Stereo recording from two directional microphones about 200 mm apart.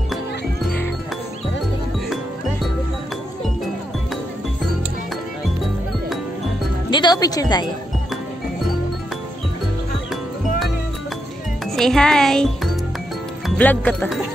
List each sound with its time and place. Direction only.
6.9 s speech: 20° left (ahead or behind)
11.6 s speech: centre (ahead or behind)
13.6 s speech: 5° left (ahead or behind)